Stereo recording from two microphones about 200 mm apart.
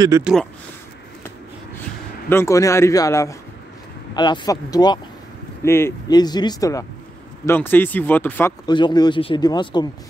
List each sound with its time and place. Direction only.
0.2 s speech: centre (ahead or behind)
2.2 s speech: 15° left (ahead or behind)
8.6 s speech: 20° left (ahead or behind)